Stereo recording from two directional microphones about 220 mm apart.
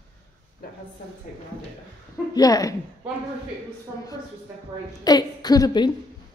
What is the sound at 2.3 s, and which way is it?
Speech, 15° left (ahead or behind).